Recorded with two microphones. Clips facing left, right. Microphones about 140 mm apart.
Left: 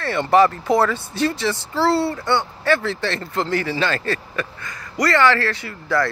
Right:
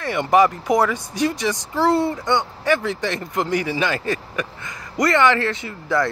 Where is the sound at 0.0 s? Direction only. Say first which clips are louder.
Left 1 dB; 15° right (ahead or behind).